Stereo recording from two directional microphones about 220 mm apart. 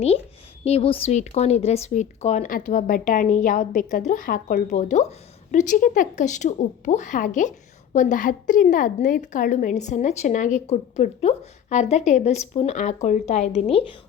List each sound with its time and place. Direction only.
0.6 s a woman's voice: 25° left (ahead or behind)